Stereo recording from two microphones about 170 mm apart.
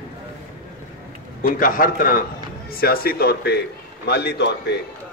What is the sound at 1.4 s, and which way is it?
A man's voice, 55° left (ahead or behind).